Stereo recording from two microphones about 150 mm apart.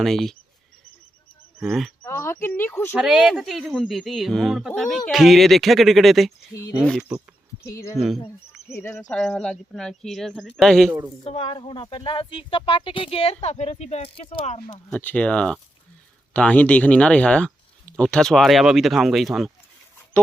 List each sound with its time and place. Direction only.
0.0 s speech: centre (ahead or behind)
1.6 s speech: centre (ahead or behind)
2.0 s speech: 15° left (ahead or behind)
2.9 s speech: 5° right (ahead or behind)
6.5 s speech: 20° left (ahead or behind)
7.9 s speech: centre (ahead or behind)
8.7 s speech: 15° left (ahead or behind)
9.0 s speech: 5° left (ahead or behind)
11.2 s speech: 40° left (ahead or behind)
14.4 s speech: 50° left (ahead or behind)
14.9 s speech: 10° left (ahead or behind)